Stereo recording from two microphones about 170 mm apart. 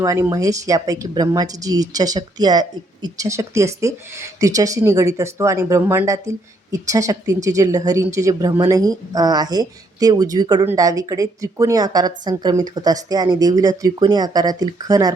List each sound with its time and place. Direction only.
0.0 s speech: 20° right (ahead or behind)